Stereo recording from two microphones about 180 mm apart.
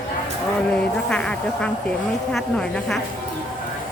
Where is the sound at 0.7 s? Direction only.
5° left (ahead or behind).